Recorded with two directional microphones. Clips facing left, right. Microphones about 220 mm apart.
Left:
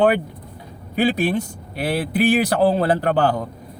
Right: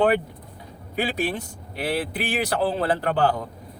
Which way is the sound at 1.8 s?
40° left (ahead or behind).